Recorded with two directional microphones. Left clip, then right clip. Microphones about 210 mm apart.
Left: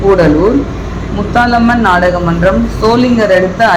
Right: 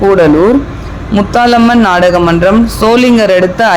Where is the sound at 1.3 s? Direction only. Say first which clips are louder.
Right 2 dB; 30° right (ahead or behind).